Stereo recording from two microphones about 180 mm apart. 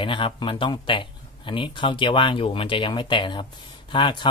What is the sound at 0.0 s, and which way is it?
Speech, 30° left (ahead or behind).